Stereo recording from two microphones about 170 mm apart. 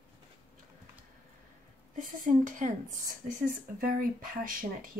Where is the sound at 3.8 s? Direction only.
55° right (ahead or behind).